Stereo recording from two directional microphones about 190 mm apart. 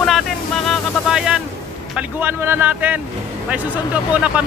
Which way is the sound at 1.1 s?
5° right (ahead or behind).